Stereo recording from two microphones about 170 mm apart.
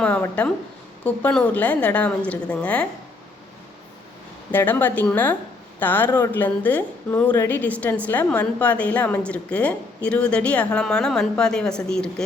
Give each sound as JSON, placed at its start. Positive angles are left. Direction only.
{"t": 0.0, "sound": "a woman's voice", "side_deg": 10}
{"t": 4.5, "sound": "a woman's voice", "side_deg": 10}